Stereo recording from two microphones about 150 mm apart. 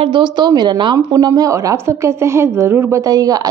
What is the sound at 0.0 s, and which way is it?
A woman's voice, 30° right (ahead or behind).